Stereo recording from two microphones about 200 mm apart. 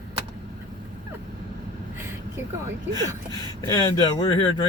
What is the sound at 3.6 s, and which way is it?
Speech, 20° left (ahead or behind).